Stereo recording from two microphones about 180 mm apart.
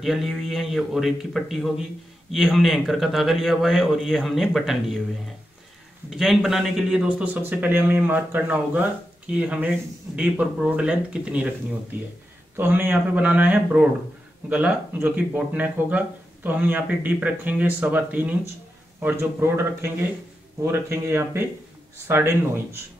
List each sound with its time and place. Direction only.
0.0 s a man's voice: centre (ahead or behind)
6.0 s a man's voice: centre (ahead or behind)
12.5 s speech: 10° right (ahead or behind)